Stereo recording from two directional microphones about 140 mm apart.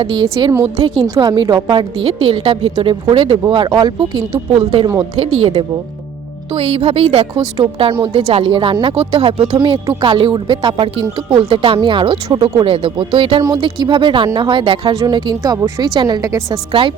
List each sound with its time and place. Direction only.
0.0 s speech: 35° right (ahead or behind)
4.5 s a woman's voice: 50° right (ahead or behind)
6.5 s a woman's voice: 45° right (ahead or behind); by 16.6 s 25° right (ahead or behind)